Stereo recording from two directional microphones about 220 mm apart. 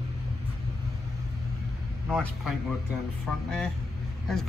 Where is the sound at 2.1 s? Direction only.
Centre (ahead or behind).